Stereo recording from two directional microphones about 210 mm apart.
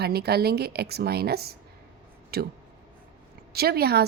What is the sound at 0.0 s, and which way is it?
A woman's voice, 50° right (ahead or behind).